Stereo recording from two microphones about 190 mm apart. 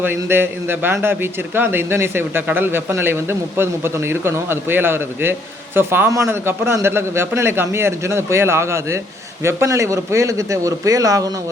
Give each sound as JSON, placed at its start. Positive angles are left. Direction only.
{"t": 0.0, "sound": "a man's voice", "side_deg": -10}